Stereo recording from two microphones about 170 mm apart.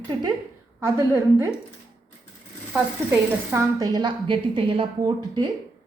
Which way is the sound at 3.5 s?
20° right (ahead or behind).